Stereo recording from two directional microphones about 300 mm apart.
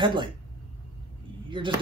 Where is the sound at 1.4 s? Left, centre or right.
Centre.